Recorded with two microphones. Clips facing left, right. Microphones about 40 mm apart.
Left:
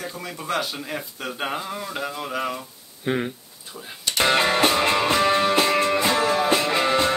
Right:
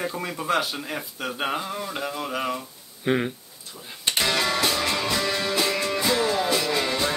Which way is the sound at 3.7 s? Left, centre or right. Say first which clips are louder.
Left 3 dB; centre.